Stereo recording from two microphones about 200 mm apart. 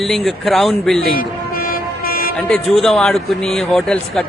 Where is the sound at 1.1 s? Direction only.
45° left (ahead or behind).